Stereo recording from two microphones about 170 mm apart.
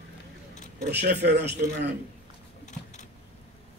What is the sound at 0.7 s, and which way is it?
Speech, 70° right (ahead or behind).